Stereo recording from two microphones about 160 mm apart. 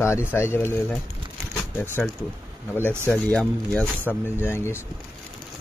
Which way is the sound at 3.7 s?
10° left (ahead or behind).